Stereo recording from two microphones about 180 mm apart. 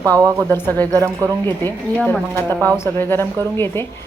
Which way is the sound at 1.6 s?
10° left (ahead or behind).